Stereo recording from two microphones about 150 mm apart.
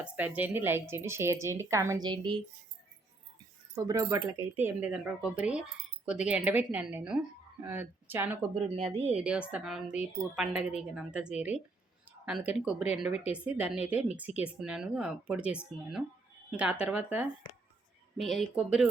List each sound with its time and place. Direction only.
0.0 s speech: 10° right (ahead or behind); by 2.4 s 30° right (ahead or behind)
3.8 s speech: 20° right (ahead or behind)
8.5 s speech: 45° right (ahead or behind)
9.1 s speech: 5° right (ahead or behind)